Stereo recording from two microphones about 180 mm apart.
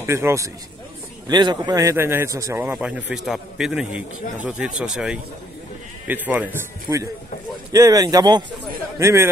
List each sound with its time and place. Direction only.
0.0 s a man's voice: 15° right (ahead or behind)